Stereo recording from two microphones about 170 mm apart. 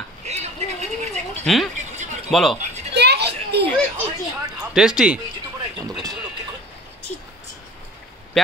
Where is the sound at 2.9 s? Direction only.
80° right.